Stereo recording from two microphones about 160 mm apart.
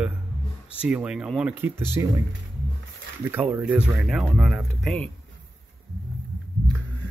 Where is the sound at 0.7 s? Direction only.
5° right (ahead or behind).